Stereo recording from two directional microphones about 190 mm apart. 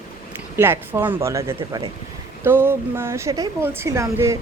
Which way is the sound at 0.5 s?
10° right (ahead or behind).